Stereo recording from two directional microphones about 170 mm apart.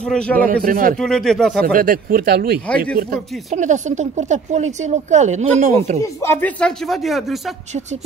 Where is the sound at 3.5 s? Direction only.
45° right (ahead or behind).